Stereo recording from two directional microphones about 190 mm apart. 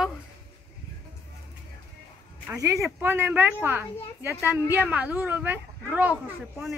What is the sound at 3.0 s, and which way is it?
A woman's voice, 10° right (ahead or behind).